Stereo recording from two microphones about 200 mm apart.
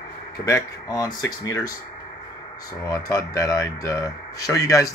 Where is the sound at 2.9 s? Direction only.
20° left (ahead or behind).